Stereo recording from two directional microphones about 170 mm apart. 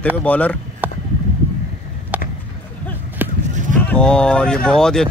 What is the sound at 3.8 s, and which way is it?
Speech, 10° left (ahead or behind).